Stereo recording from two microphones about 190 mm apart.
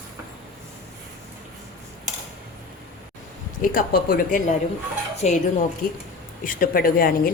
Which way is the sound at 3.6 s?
50° left (ahead or behind).